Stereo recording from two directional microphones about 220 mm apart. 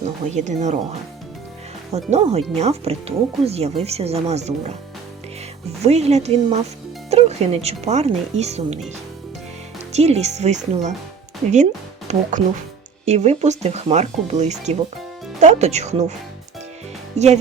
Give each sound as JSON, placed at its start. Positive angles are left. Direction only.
{"t": 0.3, "sound": "speech", "side_deg": -30}
{"t": 2.0, "sound": "speech", "side_deg": -30}
{"t": 5.8, "sound": "speech", "side_deg": -30}
{"t": 9.9, "sound": "speech", "side_deg": -30}
{"t": 17.2, "sound": "speech", "side_deg": -30}